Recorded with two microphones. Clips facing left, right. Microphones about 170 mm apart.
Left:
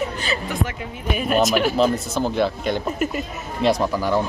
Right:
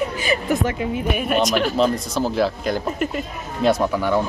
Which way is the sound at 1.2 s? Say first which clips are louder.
Left 3 dB; centre (ahead or behind).